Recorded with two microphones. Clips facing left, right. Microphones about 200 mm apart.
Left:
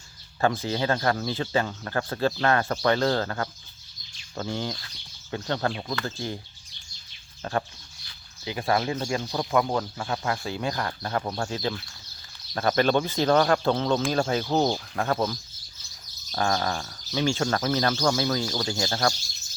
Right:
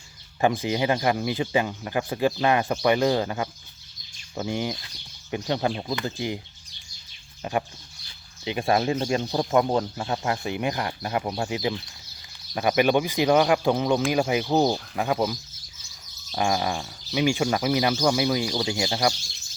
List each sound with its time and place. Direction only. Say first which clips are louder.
0.4 s speech: right 2 dB; 15° right (ahead or behind)
7.4 s speech: right 2 dB; 15° right (ahead or behind)